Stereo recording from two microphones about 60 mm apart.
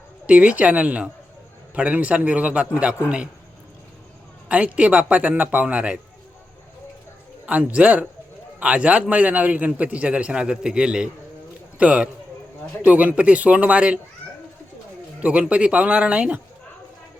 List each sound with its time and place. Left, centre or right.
0.3 s a man's voice: right
4.4 s a man's voice: right
7.4 s a man's voice: right
15.2 s a man's voice: right